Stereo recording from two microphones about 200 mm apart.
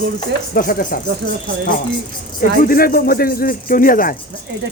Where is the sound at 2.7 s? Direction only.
45° left (ahead or behind).